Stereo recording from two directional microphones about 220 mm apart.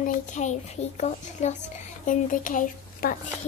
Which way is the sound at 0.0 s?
35° left (ahead or behind).